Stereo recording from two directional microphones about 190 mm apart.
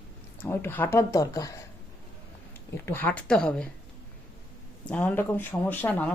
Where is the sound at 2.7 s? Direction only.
10° left (ahead or behind).